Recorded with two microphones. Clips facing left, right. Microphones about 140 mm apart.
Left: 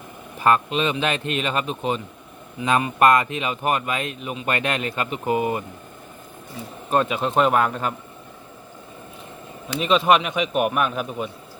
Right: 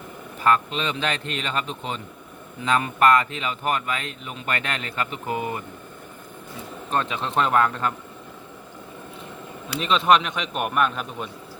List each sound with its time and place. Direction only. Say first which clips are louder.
0.4 s speech: left 2 dB; 15° left (ahead or behind)
6.9 s speech: left 4 dB; 10° left (ahead or behind)
9.8 s speech: left 1 dB; 5° left (ahead or behind)